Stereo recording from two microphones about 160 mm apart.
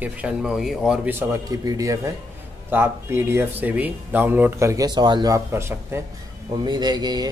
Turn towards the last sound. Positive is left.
turn(degrees=-25)  # may be behind; listen again after turning